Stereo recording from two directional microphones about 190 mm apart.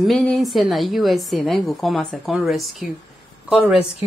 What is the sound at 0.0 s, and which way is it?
A woman's voice, centre (ahead or behind).